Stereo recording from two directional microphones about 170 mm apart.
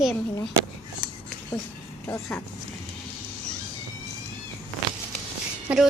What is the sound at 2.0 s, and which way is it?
Speech, 15° left (ahead or behind).